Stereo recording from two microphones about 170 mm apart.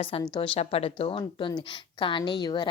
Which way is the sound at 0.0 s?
35° left (ahead or behind).